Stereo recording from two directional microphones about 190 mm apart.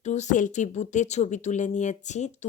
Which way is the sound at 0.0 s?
40° left (ahead or behind).